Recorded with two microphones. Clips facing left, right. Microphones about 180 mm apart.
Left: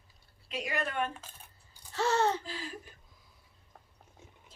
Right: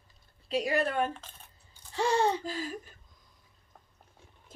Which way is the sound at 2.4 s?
45° right (ahead or behind).